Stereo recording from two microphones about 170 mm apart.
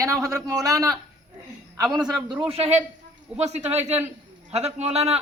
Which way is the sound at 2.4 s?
35° right (ahead or behind).